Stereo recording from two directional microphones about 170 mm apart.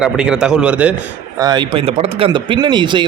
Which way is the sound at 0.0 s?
5° right (ahead or behind).